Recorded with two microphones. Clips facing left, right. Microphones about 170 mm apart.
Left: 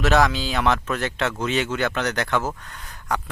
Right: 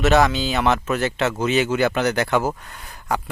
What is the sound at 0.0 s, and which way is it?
Speech, centre (ahead or behind).